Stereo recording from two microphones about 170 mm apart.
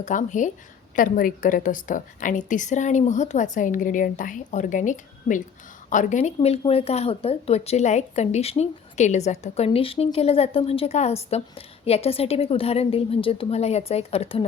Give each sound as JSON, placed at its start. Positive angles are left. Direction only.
{"t": 0.0, "sound": "a woman's voice", "side_deg": 45}